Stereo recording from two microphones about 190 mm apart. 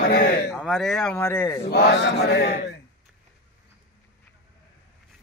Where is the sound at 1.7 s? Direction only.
55° left (ahead or behind).